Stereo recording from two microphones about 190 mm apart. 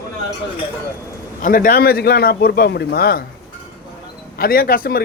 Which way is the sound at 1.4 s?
45° left (ahead or behind).